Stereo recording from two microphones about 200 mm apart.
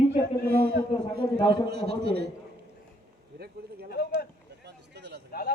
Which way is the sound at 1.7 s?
55° right (ahead or behind).